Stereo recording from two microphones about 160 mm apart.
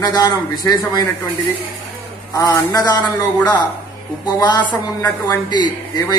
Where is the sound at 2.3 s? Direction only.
25° left (ahead or behind).